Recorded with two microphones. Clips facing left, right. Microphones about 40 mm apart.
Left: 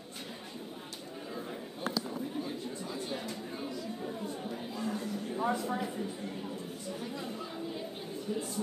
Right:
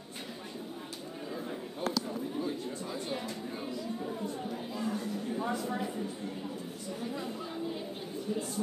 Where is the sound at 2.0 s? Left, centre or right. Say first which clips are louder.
Right 2 dB; centre.